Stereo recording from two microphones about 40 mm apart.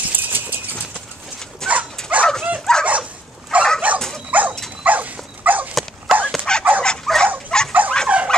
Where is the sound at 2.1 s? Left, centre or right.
Right.